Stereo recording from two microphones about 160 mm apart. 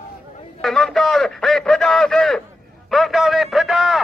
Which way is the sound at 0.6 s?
Centre (ahead or behind).